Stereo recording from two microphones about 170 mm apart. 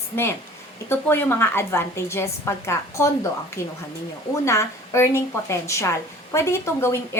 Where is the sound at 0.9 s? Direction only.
10° left (ahead or behind).